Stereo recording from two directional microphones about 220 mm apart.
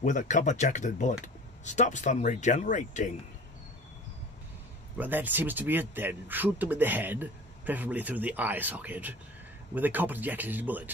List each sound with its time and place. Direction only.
0.0 s speech: 35° left (ahead or behind)
4.9 s speech: 10° right (ahead or behind)